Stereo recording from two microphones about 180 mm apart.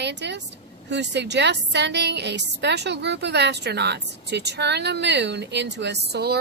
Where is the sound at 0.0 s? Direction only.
75° right (ahead or behind).